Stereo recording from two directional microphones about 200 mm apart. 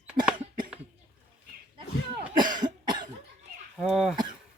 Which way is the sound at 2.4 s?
20° right (ahead or behind).